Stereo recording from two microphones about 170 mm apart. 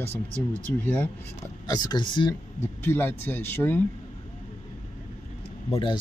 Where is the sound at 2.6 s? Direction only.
15° left (ahead or behind).